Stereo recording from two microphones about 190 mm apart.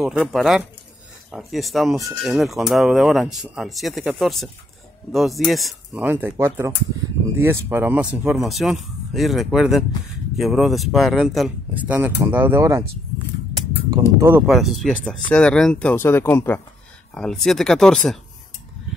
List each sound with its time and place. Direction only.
0.0 s speech: 5° right (ahead or behind)
6.0 s speech: 10° right (ahead or behind)
13.8 s speech: 15° right (ahead or behind)
14.4 s speech: centre (ahead or behind)